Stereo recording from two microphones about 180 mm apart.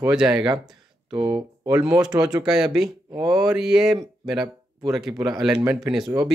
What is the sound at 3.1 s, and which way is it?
Speech, 20° right (ahead or behind).